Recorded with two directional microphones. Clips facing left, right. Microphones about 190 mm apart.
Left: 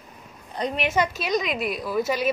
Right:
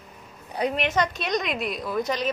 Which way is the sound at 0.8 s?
5° left (ahead or behind).